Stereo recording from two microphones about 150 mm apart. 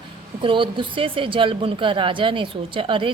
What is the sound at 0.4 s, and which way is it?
A woman's voice, 35° right (ahead or behind).